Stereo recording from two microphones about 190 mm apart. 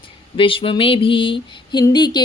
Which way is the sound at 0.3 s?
25° left (ahead or behind).